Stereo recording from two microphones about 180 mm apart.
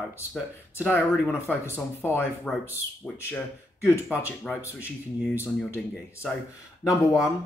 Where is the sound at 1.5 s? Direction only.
10° left (ahead or behind).